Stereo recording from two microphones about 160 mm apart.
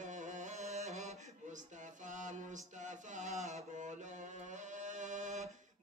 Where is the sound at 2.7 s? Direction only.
50° right (ahead or behind).